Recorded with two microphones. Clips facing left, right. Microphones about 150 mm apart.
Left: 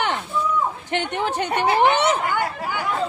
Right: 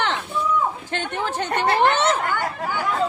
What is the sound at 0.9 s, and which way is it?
Speech, 15° left (ahead or behind).